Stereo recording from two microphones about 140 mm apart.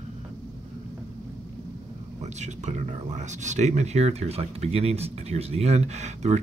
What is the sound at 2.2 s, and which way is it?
Speech, 55° right (ahead or behind).